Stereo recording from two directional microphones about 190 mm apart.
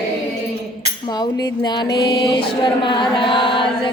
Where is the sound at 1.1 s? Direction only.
20° left (ahead or behind).